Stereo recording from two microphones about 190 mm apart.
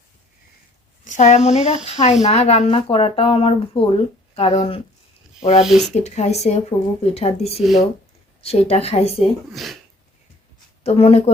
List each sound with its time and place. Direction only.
1.0 s speech: 40° left (ahead or behind)
5.6 s speech: centre (ahead or behind)
5.9 s speech: 35° left (ahead or behind)
7.6 s speech: centre (ahead or behind)
8.4 s speech: 35° left (ahead or behind)
9.5 s speech: centre (ahead or behind)
10.8 s speech: 30° left (ahead or behind)